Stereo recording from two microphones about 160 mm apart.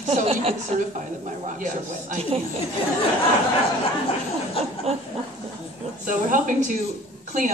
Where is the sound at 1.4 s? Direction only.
55° right (ahead or behind).